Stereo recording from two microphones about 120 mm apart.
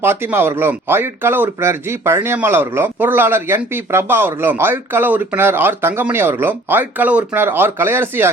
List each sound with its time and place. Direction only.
0.0 s speech: 20° right (ahead or behind)